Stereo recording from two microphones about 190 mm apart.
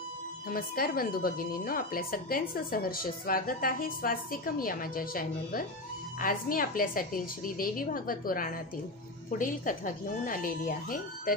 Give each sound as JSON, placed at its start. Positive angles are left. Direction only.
{"t": 0.5, "sound": "speech", "side_deg": 50}